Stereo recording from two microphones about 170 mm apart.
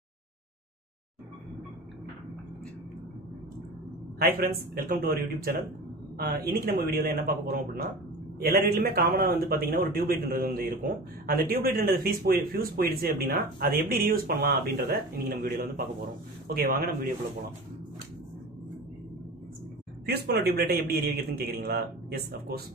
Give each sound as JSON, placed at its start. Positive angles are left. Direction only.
{"t": 4.2, "sound": "a man's voice", "side_deg": -60}
{"t": 8.4, "sound": "a man's voice", "side_deg": -65}
{"t": 20.1, "sound": "a man's voice", "side_deg": -70}